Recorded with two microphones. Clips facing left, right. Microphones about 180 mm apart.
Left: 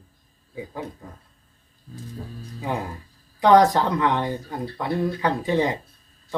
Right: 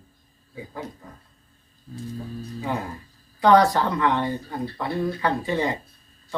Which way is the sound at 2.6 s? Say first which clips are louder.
Left 2 dB; 15° left (ahead or behind).